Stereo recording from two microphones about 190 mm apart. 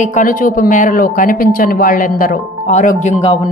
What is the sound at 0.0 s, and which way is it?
A woman's voice, 40° left (ahead or behind).